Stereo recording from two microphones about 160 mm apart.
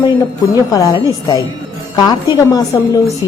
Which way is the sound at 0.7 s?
25° left (ahead or behind).